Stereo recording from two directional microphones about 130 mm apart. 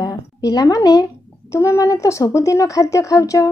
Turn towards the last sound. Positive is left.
turn(degrees=25)  # may be behind; listen again after turning